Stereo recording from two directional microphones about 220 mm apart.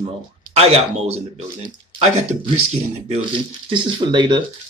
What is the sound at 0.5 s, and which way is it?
Speech, 30° right (ahead or behind).